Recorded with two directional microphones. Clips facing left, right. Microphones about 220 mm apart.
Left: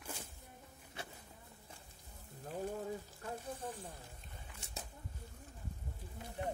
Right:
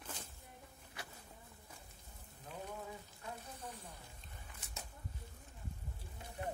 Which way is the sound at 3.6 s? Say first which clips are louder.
Left 5 dB; 50° left (ahead or behind).